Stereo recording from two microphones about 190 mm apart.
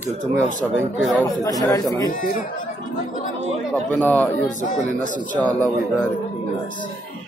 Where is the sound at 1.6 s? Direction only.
20° left (ahead or behind).